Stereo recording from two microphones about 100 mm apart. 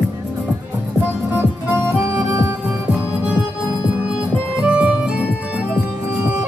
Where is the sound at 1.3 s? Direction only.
25° right (ahead or behind).